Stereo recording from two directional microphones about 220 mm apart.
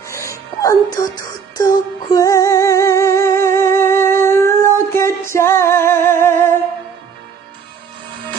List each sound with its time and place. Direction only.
0.0 s music: 15° left (ahead or behind)